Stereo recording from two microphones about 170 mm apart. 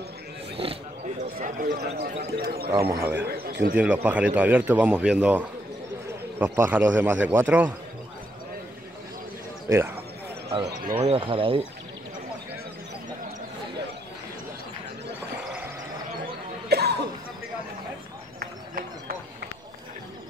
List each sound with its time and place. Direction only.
0.6 s wild animals: 35° right (ahead or behind)
2.0 s speech: 75° right (ahead or behind)
2.7 s a man's voice: 20° right (ahead or behind)
3.3 s a man's voice: 65° right (ahead or behind)
3.7 s a man's voice: 10° right (ahead or behind)
9.7 s speech: 15° right (ahead or behind)
11.0 s speech: 35° right (ahead or behind)
16.6 s cough: 75° right (ahead or behind)
18.4 s run: 60° right (ahead or behind)